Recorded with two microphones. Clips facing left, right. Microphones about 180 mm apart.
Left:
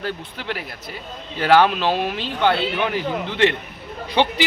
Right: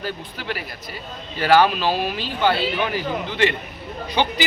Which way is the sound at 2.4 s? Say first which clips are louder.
Left 1 dB; 5° right (ahead or behind).